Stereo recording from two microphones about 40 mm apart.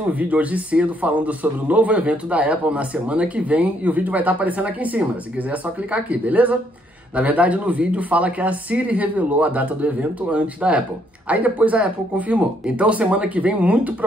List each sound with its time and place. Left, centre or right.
0.1 s a man's voice: right